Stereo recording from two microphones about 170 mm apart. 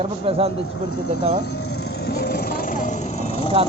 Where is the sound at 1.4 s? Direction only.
75° left (ahead or behind); by 3.5 s 35° left (ahead or behind).